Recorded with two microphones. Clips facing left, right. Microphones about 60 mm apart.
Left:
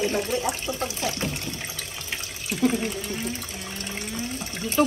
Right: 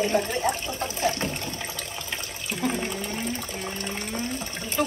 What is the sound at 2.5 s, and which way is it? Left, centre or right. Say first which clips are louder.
Water: left 4 dB; right.